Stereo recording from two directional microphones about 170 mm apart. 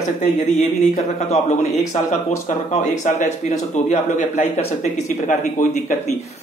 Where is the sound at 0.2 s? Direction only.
40° left (ahead or behind).